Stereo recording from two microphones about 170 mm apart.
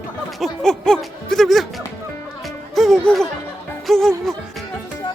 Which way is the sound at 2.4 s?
Centre (ahead or behind).